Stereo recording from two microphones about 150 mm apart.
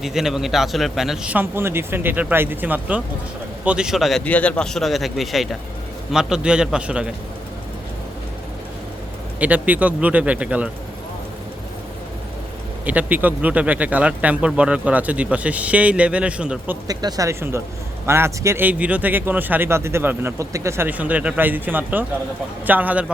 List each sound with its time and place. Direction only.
0.0 s a man's voice: 5° right (ahead or behind)
4.3 s speech: 10° left (ahead or behind); by 7.1 s 5° right (ahead or behind)
9.4 s a man's voice: 10° right (ahead or behind)
12.8 s a man's voice: 10° right (ahead or behind)
16.8 s a man's voice: 25° right (ahead or behind); by 23.1 s 10° right (ahead or behind)